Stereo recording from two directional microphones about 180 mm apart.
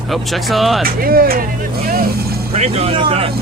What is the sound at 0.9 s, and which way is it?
Speech, 55° right (ahead or behind).